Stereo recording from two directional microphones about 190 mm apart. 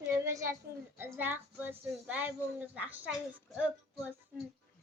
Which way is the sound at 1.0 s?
10° right (ahead or behind).